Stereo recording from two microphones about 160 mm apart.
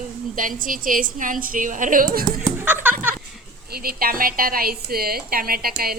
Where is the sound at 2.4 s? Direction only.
10° right (ahead or behind).